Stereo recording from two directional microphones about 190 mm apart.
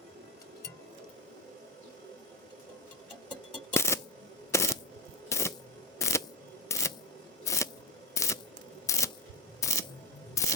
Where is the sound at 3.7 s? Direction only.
15° left (ahead or behind).